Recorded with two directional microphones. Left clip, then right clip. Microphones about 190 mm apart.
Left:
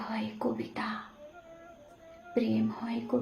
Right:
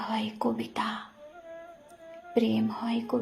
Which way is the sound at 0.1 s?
40° right (ahead or behind).